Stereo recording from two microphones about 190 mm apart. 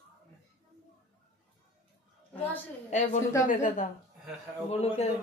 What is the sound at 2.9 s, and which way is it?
A woman's voice, 40° left (ahead or behind).